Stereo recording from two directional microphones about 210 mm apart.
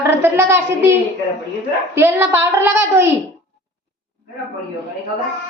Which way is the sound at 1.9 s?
10° right (ahead or behind).